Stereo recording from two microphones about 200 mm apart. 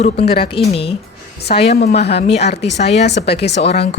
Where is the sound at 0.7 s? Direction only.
30° left (ahead or behind).